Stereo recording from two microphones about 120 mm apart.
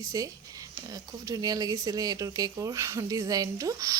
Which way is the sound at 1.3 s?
30° right (ahead or behind).